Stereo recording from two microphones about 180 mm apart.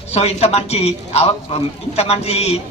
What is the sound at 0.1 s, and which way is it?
A man's voice, 35° left (ahead or behind).